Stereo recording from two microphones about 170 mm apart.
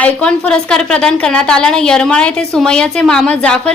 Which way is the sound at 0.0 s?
5° left (ahead or behind).